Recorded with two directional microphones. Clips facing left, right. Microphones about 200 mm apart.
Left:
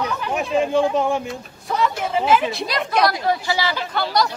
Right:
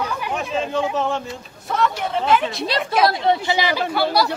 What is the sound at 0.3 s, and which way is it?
Speech, 15° left (ahead or behind).